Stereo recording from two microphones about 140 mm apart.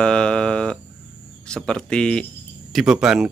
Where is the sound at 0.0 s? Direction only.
5° left (ahead or behind).